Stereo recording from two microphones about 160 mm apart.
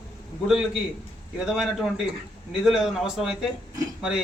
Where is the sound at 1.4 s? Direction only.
Centre (ahead or behind).